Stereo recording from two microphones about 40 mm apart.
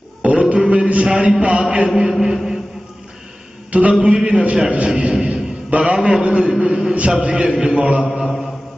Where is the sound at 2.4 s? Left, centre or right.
Centre.